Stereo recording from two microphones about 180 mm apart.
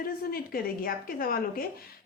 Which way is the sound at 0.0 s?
55° left (ahead or behind).